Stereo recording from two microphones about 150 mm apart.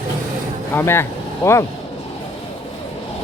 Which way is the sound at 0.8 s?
15° left (ahead or behind).